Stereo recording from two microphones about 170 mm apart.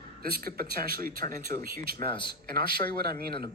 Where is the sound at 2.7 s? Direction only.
65° right (ahead or behind).